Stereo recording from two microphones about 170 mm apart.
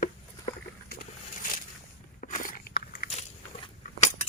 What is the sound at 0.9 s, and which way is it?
Boat, 50° left (ahead or behind).